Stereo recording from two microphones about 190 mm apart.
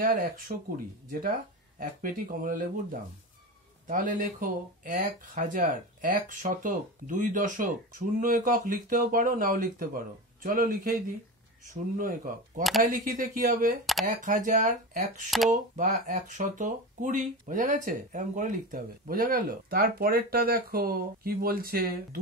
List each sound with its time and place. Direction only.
0.0 s speech: 45° right (ahead or behind)
1.8 s speech: 50° right (ahead or behind)
12.0 s speech: 45° right (ahead or behind)